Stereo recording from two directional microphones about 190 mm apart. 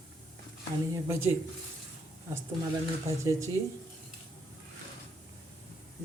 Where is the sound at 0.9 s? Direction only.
15° right (ahead or behind).